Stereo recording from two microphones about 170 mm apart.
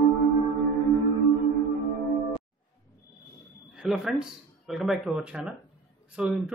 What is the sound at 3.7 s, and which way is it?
Speech, centre (ahead or behind).